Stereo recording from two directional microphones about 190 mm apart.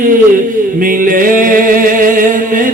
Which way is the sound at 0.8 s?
45° right (ahead or behind).